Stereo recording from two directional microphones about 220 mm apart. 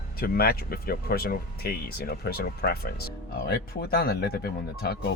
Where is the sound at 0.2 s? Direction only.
45° left (ahead or behind).